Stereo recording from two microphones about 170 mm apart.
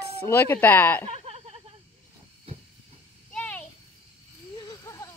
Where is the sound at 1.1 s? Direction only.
40° right (ahead or behind).